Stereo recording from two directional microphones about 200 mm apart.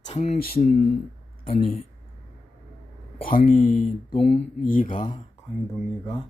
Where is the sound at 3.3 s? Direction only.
40° left (ahead or behind).